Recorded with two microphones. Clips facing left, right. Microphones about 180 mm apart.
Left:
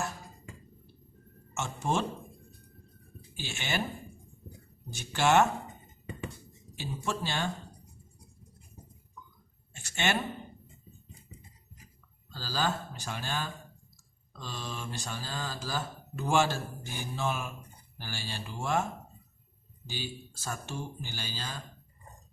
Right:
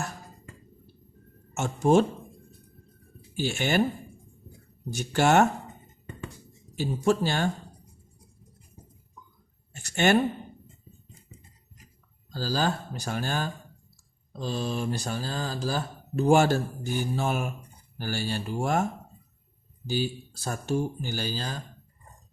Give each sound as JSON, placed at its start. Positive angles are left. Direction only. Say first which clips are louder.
{"t": 1.5, "sound": "speech", "louder": "right 10 dB", "side_deg": -40}
{"t": 3.3, "sound": "speech", "louder": "right 10 dB", "side_deg": -45}
{"t": 4.9, "sound": "speech", "louder": "right 4 dB", "side_deg": -45}
{"t": 6.7, "sound": "speech", "louder": "right 11 dB", "side_deg": -40}
{"t": 9.7, "sound": "a sound", "louder": "right 9 dB", "side_deg": -45}
{"t": 12.3, "sound": "speech", "louder": "right 5 dB", "side_deg": -40}
{"t": 19.9, "sound": "speech", "louder": "right 11 dB", "side_deg": -40}